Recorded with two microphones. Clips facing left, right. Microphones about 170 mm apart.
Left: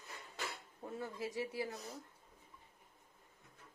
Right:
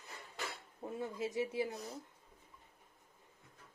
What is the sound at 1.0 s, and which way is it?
Speech, 20° right (ahead or behind).